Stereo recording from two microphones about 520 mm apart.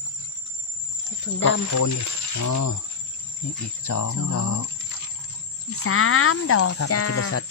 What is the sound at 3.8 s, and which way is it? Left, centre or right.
Speech, left.